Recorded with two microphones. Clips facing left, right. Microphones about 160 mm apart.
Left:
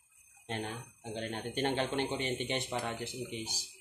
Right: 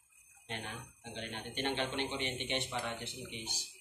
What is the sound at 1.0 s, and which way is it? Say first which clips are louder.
Speech: left 6 dB; 40° left (ahead or behind).